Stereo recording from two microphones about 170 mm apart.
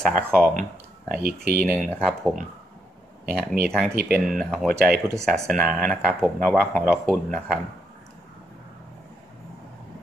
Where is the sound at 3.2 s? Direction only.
65° right (ahead or behind).